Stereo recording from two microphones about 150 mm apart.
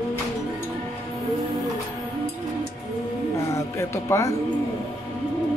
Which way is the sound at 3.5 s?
20° left (ahead or behind).